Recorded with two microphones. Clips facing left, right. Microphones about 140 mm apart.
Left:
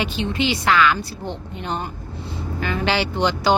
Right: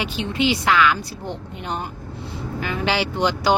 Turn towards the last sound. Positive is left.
turn(degrees=-10)  # may be behind; listen again after turning